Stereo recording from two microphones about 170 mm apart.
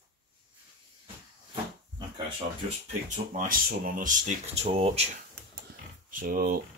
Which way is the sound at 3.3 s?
55° right (ahead or behind).